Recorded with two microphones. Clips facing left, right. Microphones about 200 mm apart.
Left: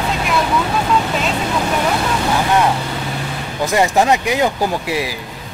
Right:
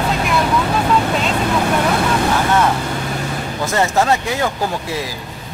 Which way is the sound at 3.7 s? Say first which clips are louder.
Left 2 dB; 15° left (ahead or behind).